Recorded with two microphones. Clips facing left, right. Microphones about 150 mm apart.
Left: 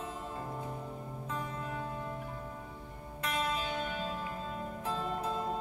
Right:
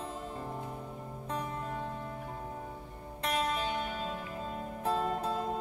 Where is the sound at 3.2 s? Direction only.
30° right (ahead or behind).